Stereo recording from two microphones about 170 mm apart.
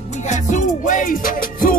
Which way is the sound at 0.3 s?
45° left (ahead or behind).